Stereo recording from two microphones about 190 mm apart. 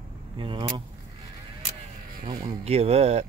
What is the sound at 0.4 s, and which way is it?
Speech, 25° right (ahead or behind).